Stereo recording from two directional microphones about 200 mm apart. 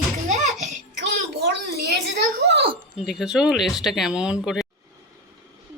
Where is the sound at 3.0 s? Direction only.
Centre (ahead or behind).